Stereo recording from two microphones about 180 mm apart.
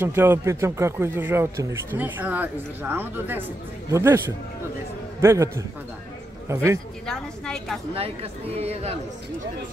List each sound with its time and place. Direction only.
0.0 s speech: 15° right (ahead or behind)
5.2 s speech: 15° right (ahead or behind)
6.5 s speech: 15° right (ahead or behind)
7.1 s a woman's voice: 5° left (ahead or behind)
7.9 s speech: 35° right (ahead or behind)